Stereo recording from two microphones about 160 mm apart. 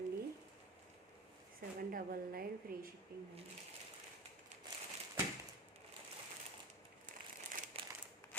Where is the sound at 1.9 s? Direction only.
65° right (ahead or behind).